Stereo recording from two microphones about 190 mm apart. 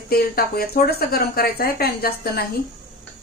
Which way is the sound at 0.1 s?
55° left (ahead or behind).